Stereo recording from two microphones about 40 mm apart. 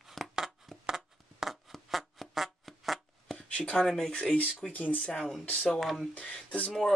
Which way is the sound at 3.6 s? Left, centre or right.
Left.